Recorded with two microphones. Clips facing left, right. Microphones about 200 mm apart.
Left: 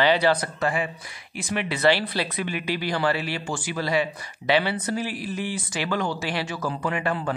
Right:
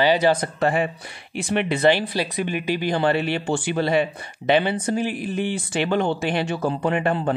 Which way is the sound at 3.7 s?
25° right (ahead or behind).